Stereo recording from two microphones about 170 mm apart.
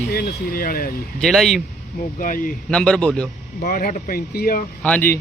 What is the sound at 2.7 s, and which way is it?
Speech, 5° left (ahead or behind).